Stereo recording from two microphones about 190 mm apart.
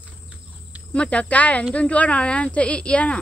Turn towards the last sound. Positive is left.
turn(degrees=5)  # may be behind; listen again after turning